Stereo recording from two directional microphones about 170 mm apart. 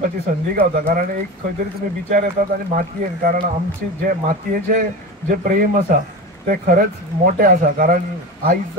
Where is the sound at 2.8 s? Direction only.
60° right (ahead or behind).